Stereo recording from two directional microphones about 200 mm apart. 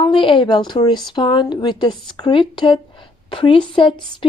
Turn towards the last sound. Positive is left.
turn(degrees=25)  # may be behind; listen again after turning